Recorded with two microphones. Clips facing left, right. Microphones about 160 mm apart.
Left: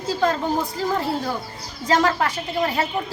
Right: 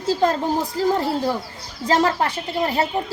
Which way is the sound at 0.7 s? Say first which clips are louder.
Right 3 dB; 35° right (ahead or behind).